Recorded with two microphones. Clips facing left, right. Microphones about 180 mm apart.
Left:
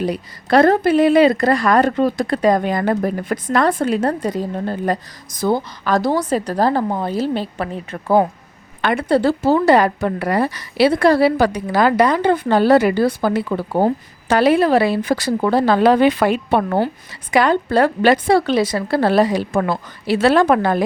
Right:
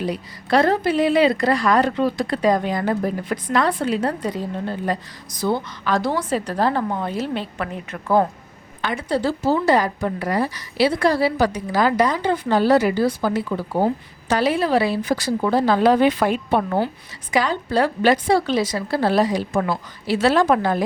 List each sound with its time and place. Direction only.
0.0 s speech: 50° left (ahead or behind); by 8.2 s 30° left (ahead or behind)
8.8 s a woman's voice: 60° left (ahead or behind)